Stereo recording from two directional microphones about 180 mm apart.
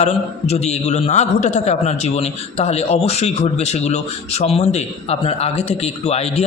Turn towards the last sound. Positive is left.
turn(degrees=35)  # may be behind; listen again after turning